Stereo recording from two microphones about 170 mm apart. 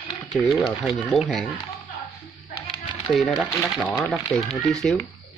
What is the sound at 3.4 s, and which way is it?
Speech, 15° left (ahead or behind).